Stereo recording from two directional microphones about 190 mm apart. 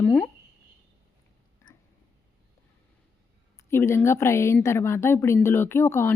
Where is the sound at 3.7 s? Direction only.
15° left (ahead or behind).